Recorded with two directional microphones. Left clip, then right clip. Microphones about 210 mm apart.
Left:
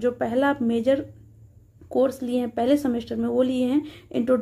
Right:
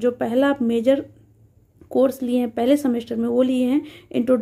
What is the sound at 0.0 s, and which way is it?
Speech, 15° right (ahead or behind).